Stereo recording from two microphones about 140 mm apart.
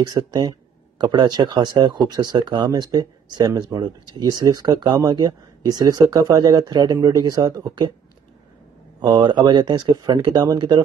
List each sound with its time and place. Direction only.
0.0 s speech: 30° right (ahead or behind)
9.0 s speech: 30° right (ahead or behind)